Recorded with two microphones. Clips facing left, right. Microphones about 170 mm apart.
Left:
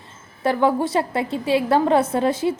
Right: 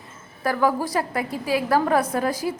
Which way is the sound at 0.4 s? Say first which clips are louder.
Left 3 dB; 25° left (ahead or behind).